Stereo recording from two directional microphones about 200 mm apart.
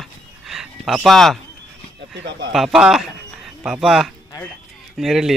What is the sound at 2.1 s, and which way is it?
Speech, 60° right (ahead or behind).